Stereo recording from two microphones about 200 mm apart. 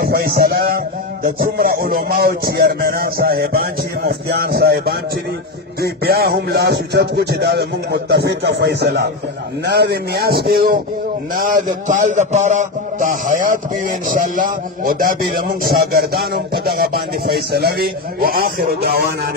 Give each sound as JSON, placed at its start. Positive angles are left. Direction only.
{"t": 0.0, "sound": "a man's voice", "side_deg": -50}
{"t": 5.8, "sound": "music", "side_deg": -50}
{"t": 9.8, "sound": "a man's voice", "side_deg": -55}